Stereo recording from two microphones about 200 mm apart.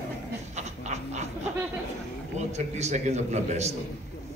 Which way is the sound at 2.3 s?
35° right (ahead or behind).